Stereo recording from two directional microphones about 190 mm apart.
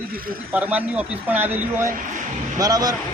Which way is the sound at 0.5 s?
10° right (ahead or behind).